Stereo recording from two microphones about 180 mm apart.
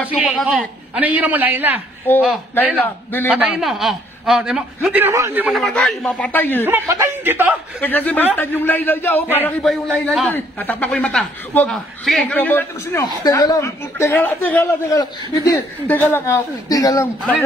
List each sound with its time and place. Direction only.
0.1 s a man's voice: 5° right (ahead or behind)
2.1 s a man's voice: 10° left (ahead or behind)
3.3 s a man's voice: 5° right (ahead or behind)
5.6 s a man's voice: 5° left (ahead or behind)
6.6 s a man's voice: 15° right (ahead or behind)
7.8 s a man's voice: 10° left (ahead or behind)
13.0 s a man's voice: 20° left (ahead or behind)